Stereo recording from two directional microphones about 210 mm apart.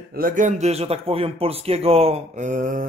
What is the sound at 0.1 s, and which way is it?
A man's voice, 40° right (ahead or behind).